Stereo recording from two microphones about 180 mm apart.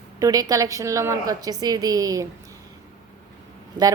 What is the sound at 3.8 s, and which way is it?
Speech, 25° right (ahead or behind).